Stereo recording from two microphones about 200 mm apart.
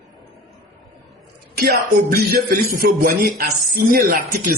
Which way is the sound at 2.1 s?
50° right (ahead or behind).